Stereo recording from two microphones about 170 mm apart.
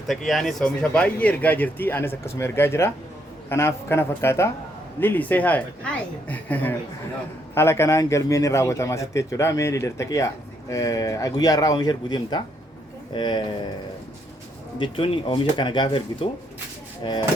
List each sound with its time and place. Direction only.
0.1 s a man's voice: centre (ahead or behind); by 13.6 s 25° left (ahead or behind)
14.8 s a man's voice: 30° left (ahead or behind)